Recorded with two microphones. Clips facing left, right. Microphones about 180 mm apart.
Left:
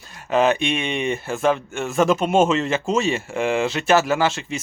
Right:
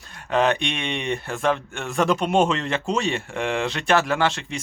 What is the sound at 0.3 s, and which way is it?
Speech, 5° left (ahead or behind).